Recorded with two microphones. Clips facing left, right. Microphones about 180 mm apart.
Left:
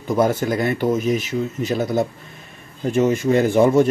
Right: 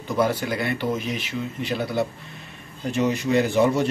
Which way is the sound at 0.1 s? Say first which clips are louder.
Left 5 dB; 45° left (ahead or behind).